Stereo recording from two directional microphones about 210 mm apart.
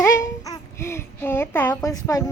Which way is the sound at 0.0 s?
10° left (ahead or behind).